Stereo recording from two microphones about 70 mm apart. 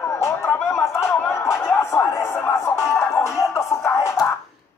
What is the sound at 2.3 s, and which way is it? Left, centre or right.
Music, left.